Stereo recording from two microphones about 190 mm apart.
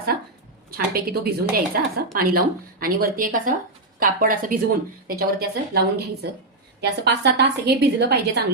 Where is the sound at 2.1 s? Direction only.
50° right (ahead or behind).